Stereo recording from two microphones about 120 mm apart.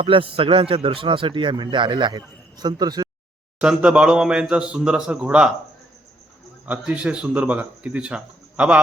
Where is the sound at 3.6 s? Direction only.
10° right (ahead or behind).